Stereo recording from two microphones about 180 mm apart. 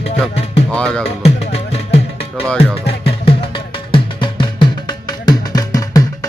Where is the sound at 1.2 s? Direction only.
35° left (ahead or behind).